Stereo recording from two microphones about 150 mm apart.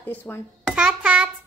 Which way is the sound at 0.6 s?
5° right (ahead or behind).